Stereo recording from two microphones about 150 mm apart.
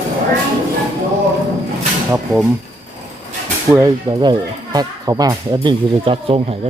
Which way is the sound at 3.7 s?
25° right (ahead or behind).